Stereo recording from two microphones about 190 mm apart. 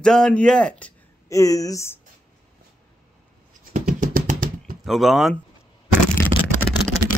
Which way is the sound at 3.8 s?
50° right (ahead or behind).